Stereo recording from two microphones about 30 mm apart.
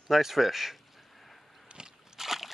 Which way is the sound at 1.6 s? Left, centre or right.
Right.